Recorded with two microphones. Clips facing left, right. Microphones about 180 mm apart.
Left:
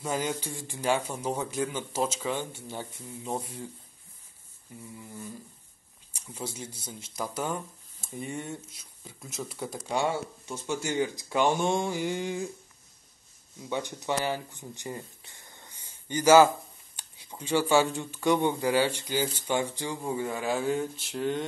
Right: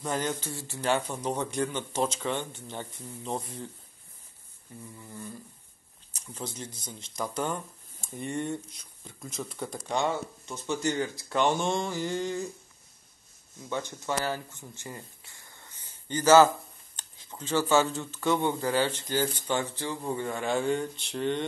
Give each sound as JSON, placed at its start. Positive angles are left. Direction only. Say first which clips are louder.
{"t": 0.0, "sound": "speech", "louder": "even", "side_deg": 10}
{"t": 5.1, "sound": "speech", "louder": "right 2 dB", "side_deg": 10}
{"t": 13.7, "sound": "speech", "louder": "left 1 dB", "side_deg": 15}